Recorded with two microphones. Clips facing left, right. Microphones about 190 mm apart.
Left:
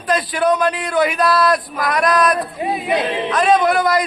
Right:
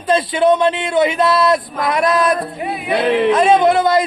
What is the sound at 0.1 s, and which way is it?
Speech, 25° right (ahead or behind).